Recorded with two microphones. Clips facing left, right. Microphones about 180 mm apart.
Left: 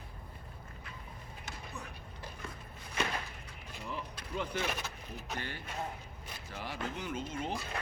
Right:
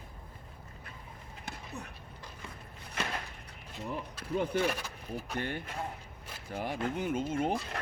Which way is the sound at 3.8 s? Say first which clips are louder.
Right 4 dB; 50° right (ahead or behind).